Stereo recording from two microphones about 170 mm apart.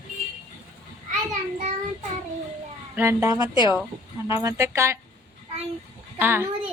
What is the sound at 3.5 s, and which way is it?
Speech, 25° left (ahead or behind).